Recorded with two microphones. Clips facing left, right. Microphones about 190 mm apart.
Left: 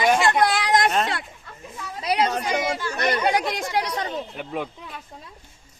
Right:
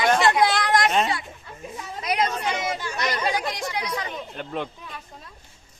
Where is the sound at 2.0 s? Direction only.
30° left (ahead or behind).